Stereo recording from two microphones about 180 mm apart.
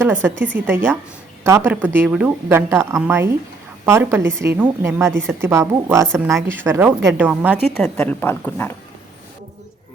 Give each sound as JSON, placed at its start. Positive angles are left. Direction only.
{"t": 0.0, "sound": "a woman's voice", "side_deg": -10}
{"t": 0.3, "sound": "speech", "side_deg": -85}
{"t": 0.7, "sound": "a woman's voice", "side_deg": -10}
{"t": 7.9, "sound": "speech", "side_deg": 10}